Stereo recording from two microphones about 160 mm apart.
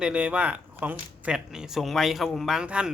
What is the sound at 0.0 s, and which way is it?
Speech, 5° right (ahead or behind).